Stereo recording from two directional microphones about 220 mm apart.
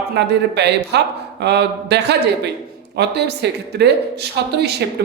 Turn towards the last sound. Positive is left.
turn(degrees=-50)  # may be behind; listen again after turning